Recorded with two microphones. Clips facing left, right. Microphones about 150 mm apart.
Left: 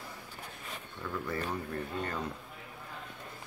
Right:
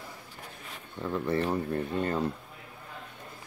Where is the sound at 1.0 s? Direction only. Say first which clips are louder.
Right 8 dB; 25° right (ahead or behind).